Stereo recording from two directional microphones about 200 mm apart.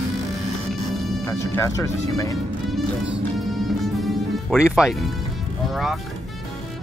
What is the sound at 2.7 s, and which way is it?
Music, 5° right (ahead or behind).